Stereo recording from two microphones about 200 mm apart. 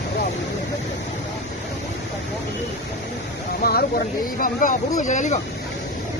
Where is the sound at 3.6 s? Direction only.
50° left (ahead or behind).